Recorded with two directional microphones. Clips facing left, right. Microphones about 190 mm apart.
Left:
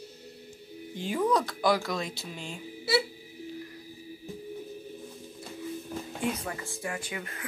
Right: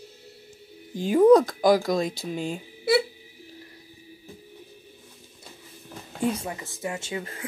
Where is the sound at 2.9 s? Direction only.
55° right (ahead or behind).